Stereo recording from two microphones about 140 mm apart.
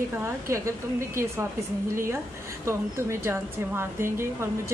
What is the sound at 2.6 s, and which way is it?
Speech, 20° right (ahead or behind).